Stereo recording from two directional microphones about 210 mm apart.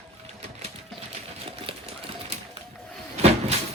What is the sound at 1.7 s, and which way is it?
Sewing machine, 25° right (ahead or behind).